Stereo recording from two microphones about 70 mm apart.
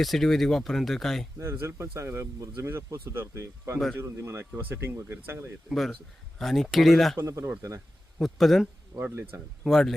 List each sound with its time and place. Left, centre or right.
0.0 s speech: centre
1.4 s speech: right
6.4 s speech: centre
7.2 s speech: right
8.2 s speech: centre
8.9 s speech: right
9.6 s speech: centre